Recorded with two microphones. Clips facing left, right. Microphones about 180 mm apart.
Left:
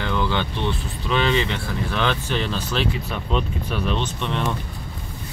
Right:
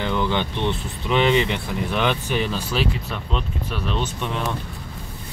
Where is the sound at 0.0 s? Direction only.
15° right (ahead or behind).